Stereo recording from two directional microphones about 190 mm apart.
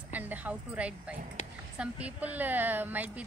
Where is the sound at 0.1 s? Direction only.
10° right (ahead or behind).